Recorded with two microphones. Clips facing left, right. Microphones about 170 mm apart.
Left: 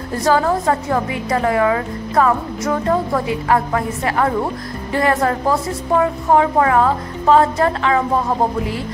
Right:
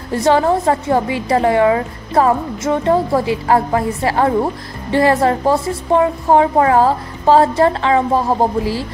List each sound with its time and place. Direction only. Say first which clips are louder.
0.1 s a woman's voice: right 3 dB; 25° right (ahead or behind)